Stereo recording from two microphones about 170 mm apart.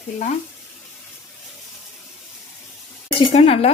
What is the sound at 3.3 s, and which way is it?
Speech, 35° left (ahead or behind).